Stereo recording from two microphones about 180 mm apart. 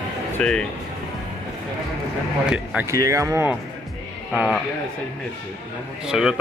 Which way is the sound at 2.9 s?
15° right (ahead or behind).